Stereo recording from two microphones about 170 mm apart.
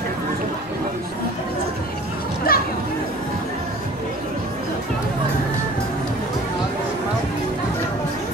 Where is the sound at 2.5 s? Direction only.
60° left (ahead or behind).